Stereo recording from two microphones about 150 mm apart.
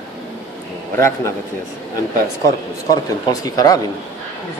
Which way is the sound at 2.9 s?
25° left (ahead or behind).